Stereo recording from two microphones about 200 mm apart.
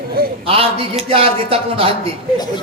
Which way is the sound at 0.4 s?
30° right (ahead or behind).